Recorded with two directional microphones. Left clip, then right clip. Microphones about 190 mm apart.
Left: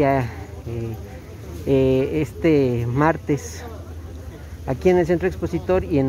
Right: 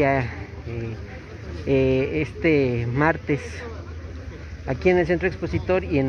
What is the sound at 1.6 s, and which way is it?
Speech, 25° left (ahead or behind).